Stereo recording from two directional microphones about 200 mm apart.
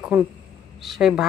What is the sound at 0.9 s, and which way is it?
Speech, centre (ahead or behind).